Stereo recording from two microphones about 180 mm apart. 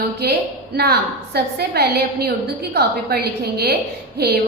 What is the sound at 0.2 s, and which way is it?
A woman's voice, 65° right (ahead or behind).